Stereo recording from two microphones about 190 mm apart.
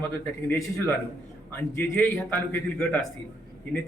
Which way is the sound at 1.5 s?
10° left (ahead or behind).